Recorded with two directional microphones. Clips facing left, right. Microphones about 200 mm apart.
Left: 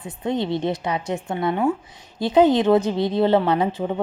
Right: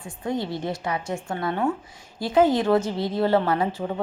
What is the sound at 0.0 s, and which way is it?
Speech, 20° left (ahead or behind).